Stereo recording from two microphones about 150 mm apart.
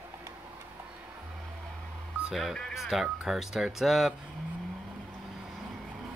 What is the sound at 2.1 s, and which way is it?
Speech, 5° right (ahead or behind).